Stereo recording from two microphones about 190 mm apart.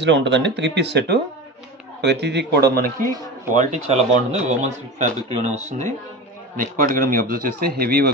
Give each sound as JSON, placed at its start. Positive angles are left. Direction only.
{"t": 0.0, "sound": "speech", "side_deg": -65}
{"t": 3.5, "sound": "a man's voice", "side_deg": -35}